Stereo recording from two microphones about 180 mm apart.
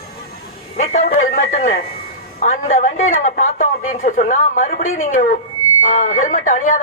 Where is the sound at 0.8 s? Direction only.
45° left (ahead or behind).